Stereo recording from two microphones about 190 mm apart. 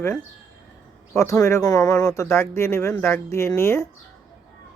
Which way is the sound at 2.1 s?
15° left (ahead or behind).